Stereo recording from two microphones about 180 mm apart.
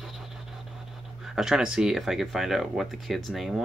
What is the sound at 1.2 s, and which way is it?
Speech, 5° right (ahead or behind).